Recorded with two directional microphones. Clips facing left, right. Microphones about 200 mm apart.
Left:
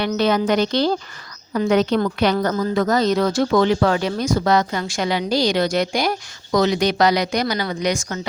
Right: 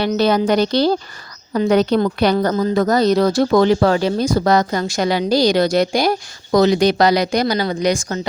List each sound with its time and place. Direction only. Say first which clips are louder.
0.2 s speech: right 2 dB; 35° right (ahead or behind)